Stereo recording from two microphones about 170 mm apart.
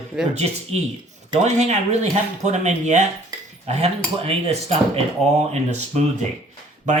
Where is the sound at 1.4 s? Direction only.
40° right (ahead or behind).